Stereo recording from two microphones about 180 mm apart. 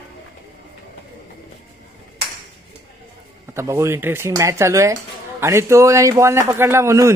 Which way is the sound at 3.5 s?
15° right (ahead or behind).